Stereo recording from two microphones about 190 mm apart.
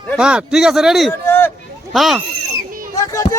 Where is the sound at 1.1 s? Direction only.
10° left (ahead or behind).